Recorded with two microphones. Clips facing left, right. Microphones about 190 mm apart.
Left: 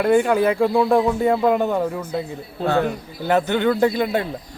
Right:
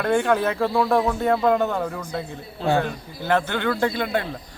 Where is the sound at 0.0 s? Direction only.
10° left (ahead or behind).